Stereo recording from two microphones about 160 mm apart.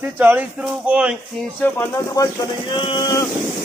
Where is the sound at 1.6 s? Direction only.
10° left (ahead or behind).